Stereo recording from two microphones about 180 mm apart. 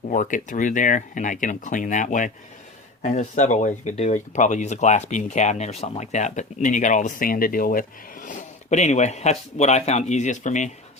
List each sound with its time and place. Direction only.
0.1 s speech: 45° left (ahead or behind)